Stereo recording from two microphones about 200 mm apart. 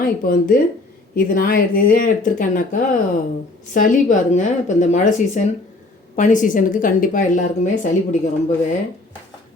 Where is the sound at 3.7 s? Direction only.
40° left (ahead or behind).